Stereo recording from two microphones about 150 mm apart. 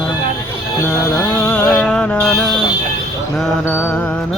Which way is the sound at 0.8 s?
15° left (ahead or behind).